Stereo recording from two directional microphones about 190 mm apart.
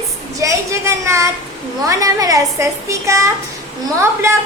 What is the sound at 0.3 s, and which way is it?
A child's voice, 15° right (ahead or behind).